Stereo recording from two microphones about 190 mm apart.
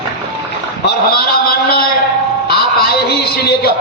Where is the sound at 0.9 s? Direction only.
55° left (ahead or behind).